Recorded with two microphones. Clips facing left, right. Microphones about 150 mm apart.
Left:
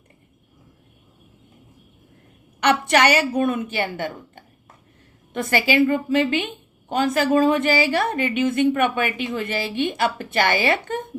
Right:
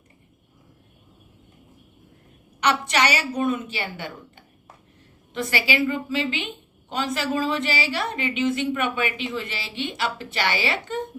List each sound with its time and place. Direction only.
2.6 s a woman's voice: 55° left (ahead or behind)